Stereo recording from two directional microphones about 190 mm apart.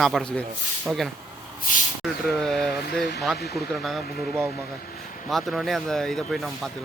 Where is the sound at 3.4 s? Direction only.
55° left (ahead or behind).